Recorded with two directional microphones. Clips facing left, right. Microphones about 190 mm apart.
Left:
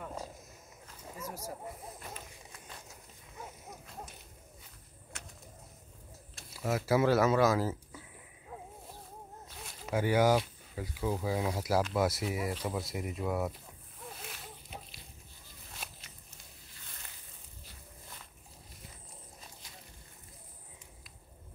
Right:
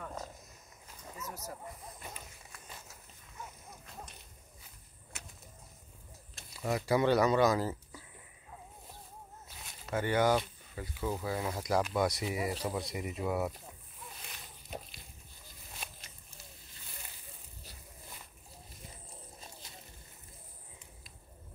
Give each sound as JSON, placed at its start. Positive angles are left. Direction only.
{"t": 0.0, "sound": "a sound", "side_deg": 10}
{"t": 5.1, "sound": "bird", "side_deg": -5}
{"t": 6.3, "sound": "speech", "side_deg": 5}
{"t": 9.8, "sound": "speech", "side_deg": 10}
{"t": 14.7, "sound": "dog", "side_deg": -45}
{"t": 15.8, "sound": "walk", "side_deg": 5}